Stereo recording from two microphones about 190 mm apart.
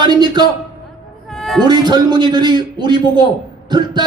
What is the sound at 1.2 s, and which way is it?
Music, centre (ahead or behind).